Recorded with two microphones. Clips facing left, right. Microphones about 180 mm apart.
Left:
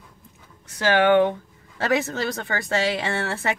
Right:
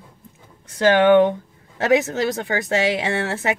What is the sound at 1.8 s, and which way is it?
A woman's voice, 20° right (ahead or behind).